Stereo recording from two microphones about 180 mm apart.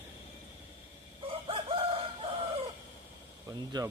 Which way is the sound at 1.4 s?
30° right (ahead or behind).